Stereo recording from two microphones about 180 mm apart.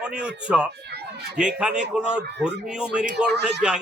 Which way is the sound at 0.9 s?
65° right (ahead or behind).